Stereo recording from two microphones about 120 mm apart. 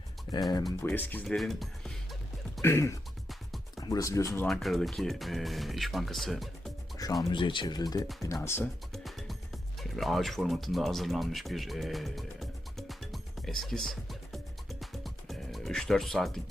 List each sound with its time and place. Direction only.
0.9 s speech: 15° left (ahead or behind)
1.2 s speech: 5° left (ahead or behind)
2.6 s speech: 25° left (ahead or behind)
4.4 s speech: centre (ahead or behind)
6.9 s speech: 30° left (ahead or behind)
8.2 s speech: 25° left (ahead or behind)
8.9 s music: centre (ahead or behind)